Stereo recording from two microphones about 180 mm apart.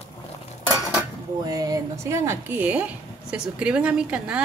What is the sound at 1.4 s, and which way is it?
Speech, 20° right (ahead or behind).